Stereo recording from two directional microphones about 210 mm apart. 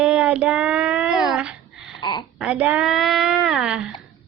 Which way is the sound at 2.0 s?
20° left (ahead or behind).